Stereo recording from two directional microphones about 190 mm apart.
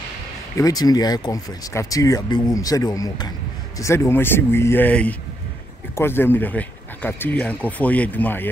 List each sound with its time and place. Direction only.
0.6 s speech: 20° left (ahead or behind)